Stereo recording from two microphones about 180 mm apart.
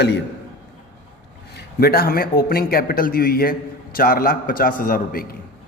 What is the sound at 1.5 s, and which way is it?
A man's voice, 60° left (ahead or behind).